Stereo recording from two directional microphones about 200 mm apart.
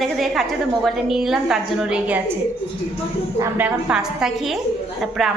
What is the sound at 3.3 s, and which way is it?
A woman's voice, 10° right (ahead or behind).